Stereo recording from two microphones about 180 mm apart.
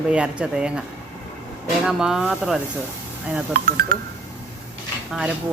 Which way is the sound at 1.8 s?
5° right (ahead or behind).